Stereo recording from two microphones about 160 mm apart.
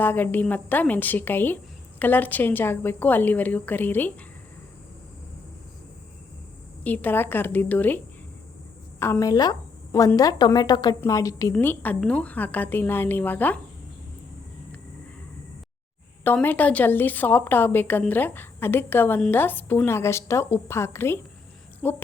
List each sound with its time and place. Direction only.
0.0 s a woman's voice: 10° left (ahead or behind)
6.8 s a woman's voice: 10° left (ahead or behind)
16.2 s a woman's voice: 10° left (ahead or behind)